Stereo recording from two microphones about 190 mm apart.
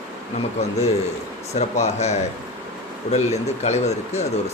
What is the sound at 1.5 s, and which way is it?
Speech, 35° left (ahead or behind).